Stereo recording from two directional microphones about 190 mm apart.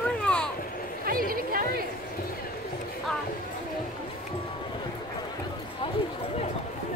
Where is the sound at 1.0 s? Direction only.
50° right (ahead or behind).